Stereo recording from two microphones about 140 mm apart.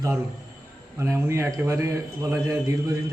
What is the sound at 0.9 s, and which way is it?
A man's voice, 20° right (ahead or behind).